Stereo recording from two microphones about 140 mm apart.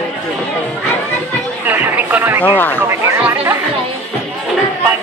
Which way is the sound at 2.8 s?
20° right (ahead or behind).